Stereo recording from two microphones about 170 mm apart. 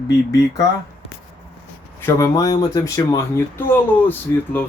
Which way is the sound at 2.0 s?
15° left (ahead or behind).